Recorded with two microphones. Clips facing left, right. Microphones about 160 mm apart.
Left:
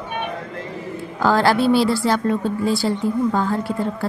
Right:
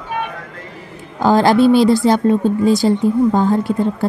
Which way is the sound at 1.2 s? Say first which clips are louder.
Right 5 dB; 20° right (ahead or behind).